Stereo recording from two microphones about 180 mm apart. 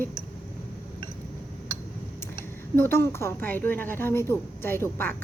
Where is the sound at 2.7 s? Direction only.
15° left (ahead or behind).